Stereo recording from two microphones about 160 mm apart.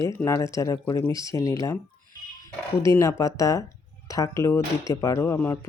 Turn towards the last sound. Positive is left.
turn(degrees=15)  # may be behind; listen again after turning